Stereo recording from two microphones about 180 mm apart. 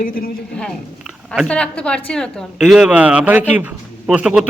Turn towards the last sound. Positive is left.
turn(degrees=-5)  # may be behind; listen again after turning